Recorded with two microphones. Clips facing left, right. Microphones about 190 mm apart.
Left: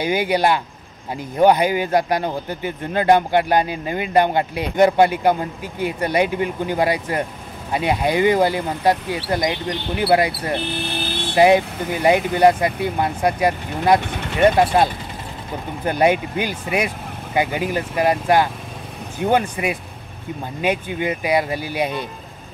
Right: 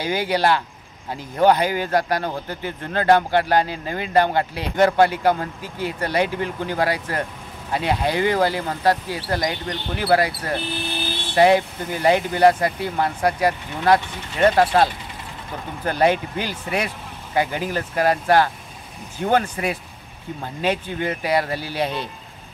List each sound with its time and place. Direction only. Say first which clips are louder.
0.0 s speech: left 2 dB; 15° left (ahead or behind)
14.0 s speech: left 7 dB; 65° left (ahead or behind)
14.4 s speech: left 1 dB; 15° left (ahead or behind)